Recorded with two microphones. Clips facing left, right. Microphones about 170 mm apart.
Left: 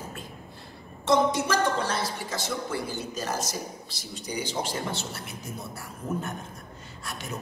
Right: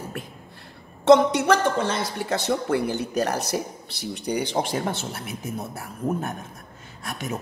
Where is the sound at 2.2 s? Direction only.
65° right (ahead or behind).